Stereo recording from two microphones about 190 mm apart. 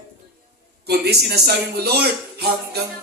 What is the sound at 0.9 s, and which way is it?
Speech, 60° right (ahead or behind).